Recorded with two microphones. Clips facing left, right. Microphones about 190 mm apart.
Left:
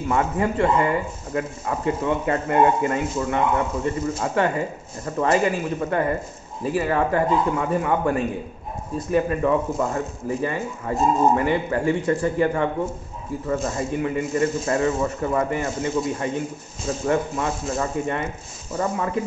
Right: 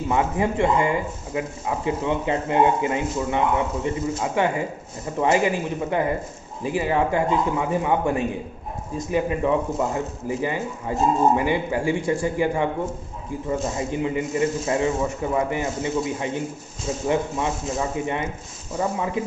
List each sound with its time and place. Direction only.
0.1 s speech: 15° right (ahead or behind)